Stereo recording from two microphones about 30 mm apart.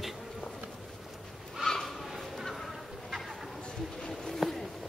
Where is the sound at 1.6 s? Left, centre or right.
Centre.